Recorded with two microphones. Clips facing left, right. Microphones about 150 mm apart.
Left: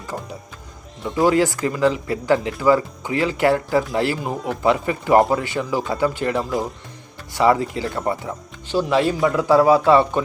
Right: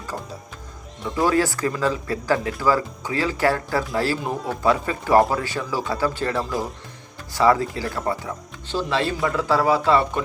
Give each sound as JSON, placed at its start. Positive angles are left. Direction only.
{"t": 1.2, "sound": "speech", "side_deg": 20}
{"t": 4.2, "sound": "speech", "side_deg": 5}
{"t": 4.6, "sound": "speech", "side_deg": 20}